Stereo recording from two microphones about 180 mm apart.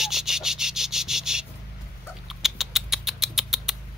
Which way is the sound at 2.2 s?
Centre (ahead or behind).